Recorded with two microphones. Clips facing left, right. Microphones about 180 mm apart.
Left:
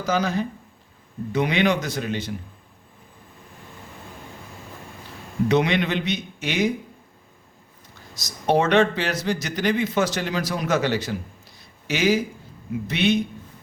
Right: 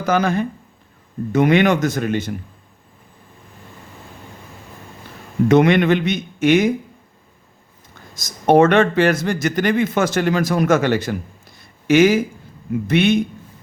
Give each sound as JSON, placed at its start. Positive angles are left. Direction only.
{"t": 0.0, "sound": "speech", "side_deg": -55}
{"t": 5.5, "sound": "speech", "side_deg": -50}
{"t": 8.1, "sound": "speech", "side_deg": -50}